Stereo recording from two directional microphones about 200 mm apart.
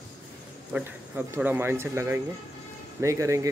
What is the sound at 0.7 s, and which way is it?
Speech, 10° right (ahead or behind).